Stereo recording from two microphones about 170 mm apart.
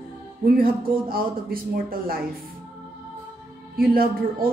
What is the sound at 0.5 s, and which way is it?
Speech, 60° right (ahead or behind).